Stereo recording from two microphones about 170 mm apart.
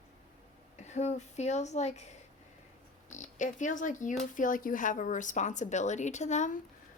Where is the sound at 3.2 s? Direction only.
45° left (ahead or behind).